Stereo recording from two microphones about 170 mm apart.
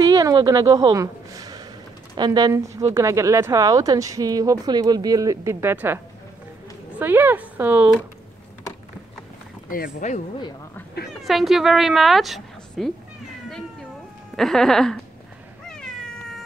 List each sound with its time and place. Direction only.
0.0 s a sound: 20° right (ahead or behind)
2.1 s a woman's voice: 25° right (ahead or behind)
7.0 s speech: 10° right (ahead or behind)
9.7 s speech: 55° left (ahead or behind)
11.2 s a woman's voice: centre (ahead or behind)
14.3 s a woman's voice: 5° left (ahead or behind)
15.6 s cat: 5° left (ahead or behind)